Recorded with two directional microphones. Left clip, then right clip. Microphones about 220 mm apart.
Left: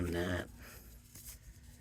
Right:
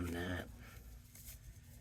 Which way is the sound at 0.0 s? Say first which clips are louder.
Left 6 dB; 40° left (ahead or behind).